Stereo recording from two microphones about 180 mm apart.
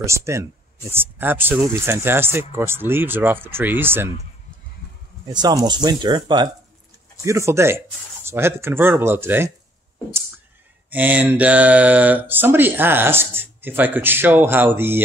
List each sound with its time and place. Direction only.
0.0 s speech: 15° right (ahead or behind)
5.2 s speech: 25° right (ahead or behind)
10.9 s speech: 10° right (ahead or behind)